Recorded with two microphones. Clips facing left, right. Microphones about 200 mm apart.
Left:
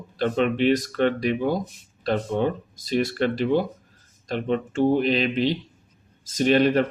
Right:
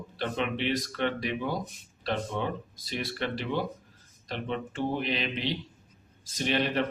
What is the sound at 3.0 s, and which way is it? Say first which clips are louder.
Speech: left 10 dB; 45° left (ahead or behind).